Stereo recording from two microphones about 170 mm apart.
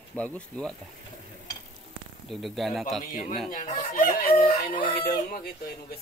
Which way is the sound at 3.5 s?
55° left (ahead or behind).